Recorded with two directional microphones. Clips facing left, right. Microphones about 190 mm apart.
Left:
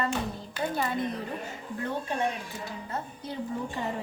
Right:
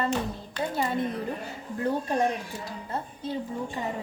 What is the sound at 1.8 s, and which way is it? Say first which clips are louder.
Speech: right 5 dB; 40° right (ahead or behind).